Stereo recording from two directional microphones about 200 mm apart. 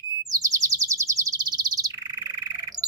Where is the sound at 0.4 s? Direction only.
15° right (ahead or behind).